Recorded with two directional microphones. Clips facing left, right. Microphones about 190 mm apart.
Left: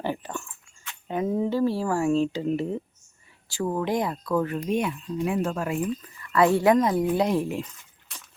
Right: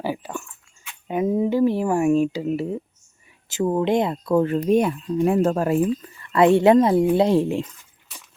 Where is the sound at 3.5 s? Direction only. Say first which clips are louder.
Right 6 dB; 20° right (ahead or behind).